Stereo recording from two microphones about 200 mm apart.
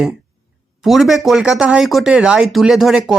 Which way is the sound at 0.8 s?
Centre (ahead or behind).